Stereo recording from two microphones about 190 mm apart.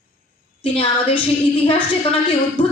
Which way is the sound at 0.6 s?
30° left (ahead or behind).